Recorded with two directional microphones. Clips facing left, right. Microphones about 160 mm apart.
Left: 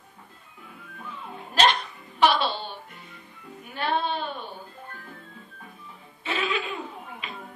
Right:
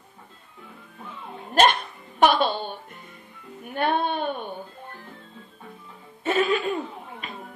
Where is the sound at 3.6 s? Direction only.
55° right (ahead or behind).